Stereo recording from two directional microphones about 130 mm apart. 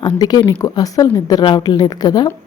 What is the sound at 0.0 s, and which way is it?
A woman's voice, 30° left (ahead or behind).